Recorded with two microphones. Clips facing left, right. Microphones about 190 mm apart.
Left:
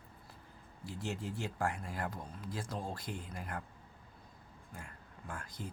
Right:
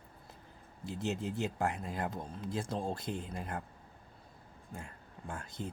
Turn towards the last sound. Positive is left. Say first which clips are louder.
# right 3 dB
turn(degrees=-25)  # may be behind; listen again after turning